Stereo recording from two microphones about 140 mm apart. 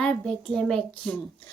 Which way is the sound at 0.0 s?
5° left (ahead or behind).